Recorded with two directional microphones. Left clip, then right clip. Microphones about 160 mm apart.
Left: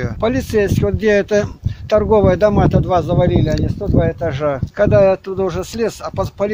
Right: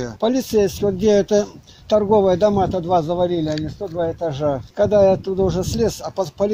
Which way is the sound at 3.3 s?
55° left (ahead or behind).